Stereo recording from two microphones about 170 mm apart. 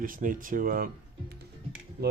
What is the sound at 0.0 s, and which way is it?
Speech, 50° right (ahead or behind).